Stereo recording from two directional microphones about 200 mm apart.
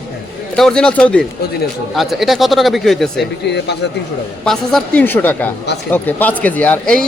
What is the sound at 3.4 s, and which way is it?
Speech, 60° left (ahead or behind).